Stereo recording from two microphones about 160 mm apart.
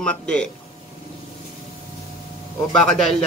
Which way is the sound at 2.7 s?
5° left (ahead or behind).